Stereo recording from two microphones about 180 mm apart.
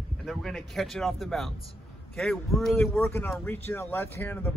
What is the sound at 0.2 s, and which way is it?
Speech, centre (ahead or behind).